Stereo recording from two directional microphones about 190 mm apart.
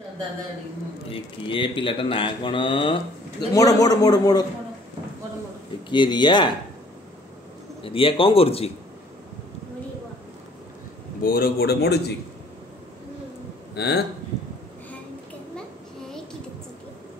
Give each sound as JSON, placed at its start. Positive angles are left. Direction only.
{"t": 1.1, "sound": "speech", "side_deg": 25}
{"t": 5.9, "sound": "speech", "side_deg": 25}
{"t": 7.8, "sound": "speech", "side_deg": 30}
{"t": 11.2, "sound": "speech", "side_deg": 50}
{"t": 13.7, "sound": "speech", "side_deg": 60}